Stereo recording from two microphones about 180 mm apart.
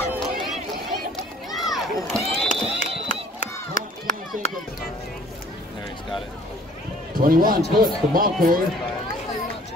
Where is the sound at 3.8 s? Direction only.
45° left (ahead or behind).